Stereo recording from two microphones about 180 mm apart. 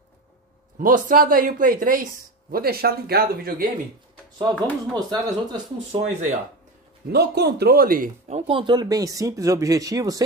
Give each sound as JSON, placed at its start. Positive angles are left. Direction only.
{"t": 0.7, "sound": "speech", "side_deg": -50}
{"t": 4.9, "sound": "speech", "side_deg": -20}
{"t": 5.9, "sound": "speech", "side_deg": -40}
{"t": 7.1, "sound": "speech", "side_deg": -65}